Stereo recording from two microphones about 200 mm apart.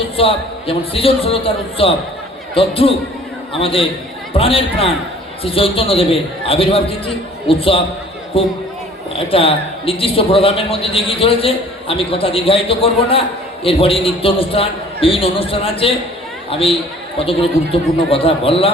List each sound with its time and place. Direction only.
0.2 s a man's voice: 30° left (ahead or behind)